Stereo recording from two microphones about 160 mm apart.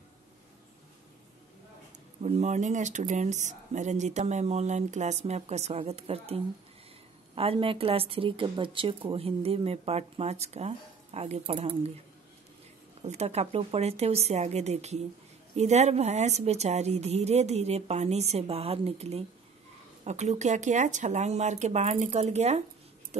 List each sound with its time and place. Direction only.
2.2 s speech: 45° right (ahead or behind)
13.0 s speech: 40° right (ahead or behind)